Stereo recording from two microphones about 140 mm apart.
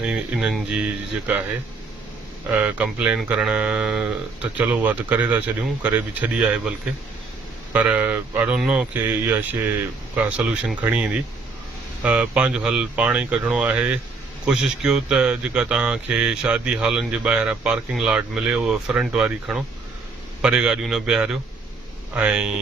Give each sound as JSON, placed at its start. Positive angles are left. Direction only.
{"t": 0.0, "sound": "speech", "side_deg": -5}
{"t": 2.5, "sound": "speech", "side_deg": -10}
{"t": 7.7, "sound": "speech", "side_deg": -10}